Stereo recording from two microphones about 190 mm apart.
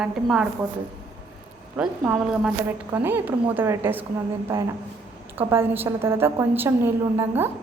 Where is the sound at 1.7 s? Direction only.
5° right (ahead or behind).